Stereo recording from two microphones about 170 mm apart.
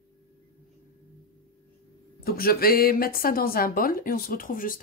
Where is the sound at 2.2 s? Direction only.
60° left (ahead or behind).